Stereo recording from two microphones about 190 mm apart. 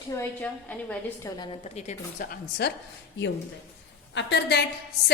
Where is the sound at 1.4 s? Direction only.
30° left (ahead or behind); by 2.7 s 55° left (ahead or behind).